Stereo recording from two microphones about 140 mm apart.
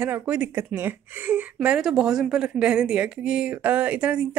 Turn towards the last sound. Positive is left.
turn(degrees=-10)  # may be behind; listen again after turning